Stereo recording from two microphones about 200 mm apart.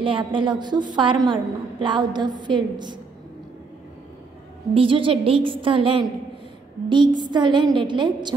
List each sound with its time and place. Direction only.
0.0 s a woman's voice: 25° right (ahead or behind)
4.7 s a woman's voice: 25° right (ahead or behind)